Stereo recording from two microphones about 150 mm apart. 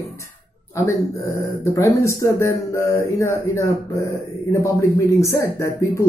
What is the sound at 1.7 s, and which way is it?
Speech, 20° left (ahead or behind).